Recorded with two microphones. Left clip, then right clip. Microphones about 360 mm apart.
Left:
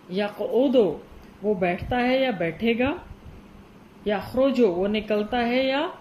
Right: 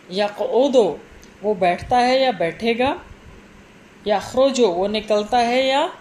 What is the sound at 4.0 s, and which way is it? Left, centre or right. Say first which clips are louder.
Speech: right 6 dB; right.